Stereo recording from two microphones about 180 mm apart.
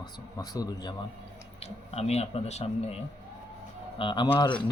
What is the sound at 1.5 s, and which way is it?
Speech, 35° left (ahead or behind).